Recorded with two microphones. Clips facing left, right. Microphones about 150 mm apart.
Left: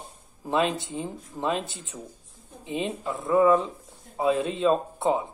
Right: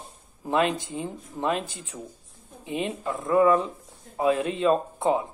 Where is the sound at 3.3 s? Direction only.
20° left (ahead or behind).